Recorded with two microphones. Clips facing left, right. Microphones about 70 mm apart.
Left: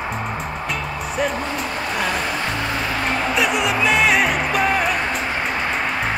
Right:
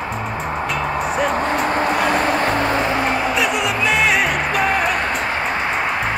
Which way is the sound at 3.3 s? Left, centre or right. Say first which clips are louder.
Even; centre.